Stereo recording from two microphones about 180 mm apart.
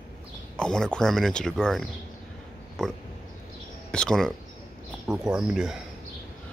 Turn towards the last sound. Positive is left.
turn(degrees=0)  # may be behind; listen again after turning